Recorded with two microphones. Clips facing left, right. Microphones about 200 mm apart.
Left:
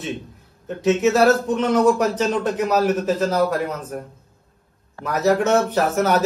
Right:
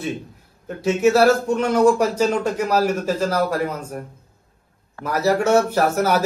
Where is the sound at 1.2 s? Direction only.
Centre (ahead or behind).